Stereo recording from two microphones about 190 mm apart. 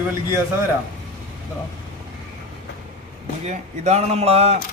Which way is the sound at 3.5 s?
35° right (ahead or behind).